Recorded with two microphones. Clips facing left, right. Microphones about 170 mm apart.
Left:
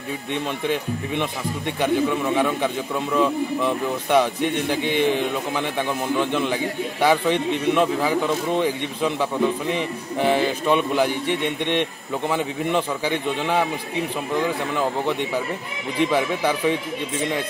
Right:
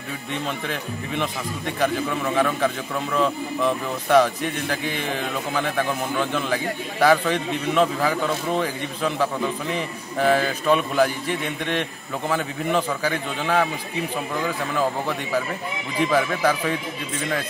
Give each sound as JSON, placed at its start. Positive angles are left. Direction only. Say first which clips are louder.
{"t": 0.7, "sound": "a man's voice", "louder": "left 5 dB", "side_deg": 20}
{"t": 2.3, "sound": "speech", "louder": "even", "side_deg": 15}
{"t": 12.3, "sound": "a man's voice", "louder": "even", "side_deg": 20}
{"t": 16.1, "sound": "a man's voice", "louder": "right 4 dB", "side_deg": 20}